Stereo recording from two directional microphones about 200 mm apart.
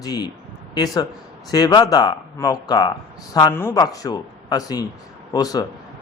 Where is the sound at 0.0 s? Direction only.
20° left (ahead or behind).